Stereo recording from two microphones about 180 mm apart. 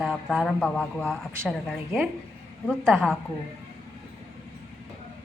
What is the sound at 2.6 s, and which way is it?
Speech, 5° left (ahead or behind).